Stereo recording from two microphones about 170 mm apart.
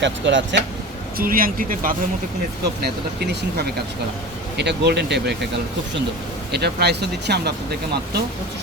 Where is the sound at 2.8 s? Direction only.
70° right (ahead or behind).